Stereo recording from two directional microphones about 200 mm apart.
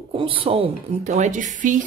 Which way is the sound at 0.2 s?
25° right (ahead or behind).